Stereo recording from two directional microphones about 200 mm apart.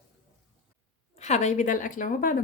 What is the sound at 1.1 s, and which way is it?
A woman's voice, 35° left (ahead or behind).